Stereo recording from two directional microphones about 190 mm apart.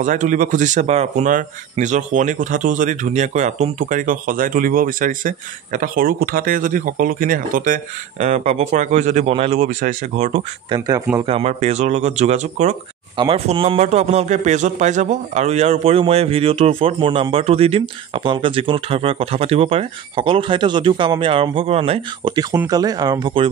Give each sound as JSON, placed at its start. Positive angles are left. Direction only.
{"t": 0.0, "sound": "speech", "side_deg": -40}
{"t": 9.7, "sound": "a man's voice", "side_deg": -45}